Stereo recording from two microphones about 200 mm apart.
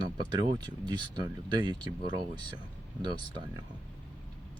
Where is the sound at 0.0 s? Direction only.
20° right (ahead or behind).